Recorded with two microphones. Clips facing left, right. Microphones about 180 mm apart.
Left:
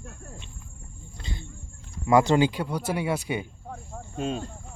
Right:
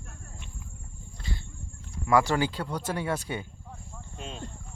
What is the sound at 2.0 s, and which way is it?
Speech, 20° left (ahead or behind).